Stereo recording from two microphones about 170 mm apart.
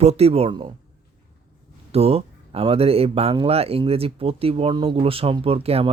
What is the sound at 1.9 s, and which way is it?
Speech, 35° right (ahead or behind).